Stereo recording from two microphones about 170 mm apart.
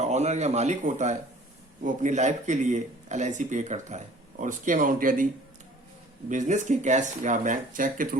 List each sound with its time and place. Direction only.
0.0 s speech: 40° right (ahead or behind)